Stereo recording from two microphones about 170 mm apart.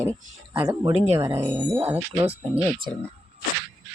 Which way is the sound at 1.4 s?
10° right (ahead or behind).